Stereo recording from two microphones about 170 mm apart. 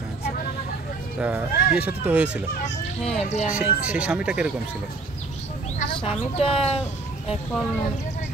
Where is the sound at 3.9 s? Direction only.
5° right (ahead or behind).